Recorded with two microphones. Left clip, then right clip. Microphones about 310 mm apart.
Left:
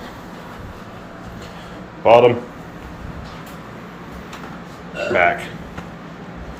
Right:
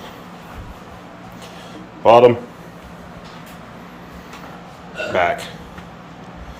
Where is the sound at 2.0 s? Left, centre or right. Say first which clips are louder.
Right 1 dB; centre.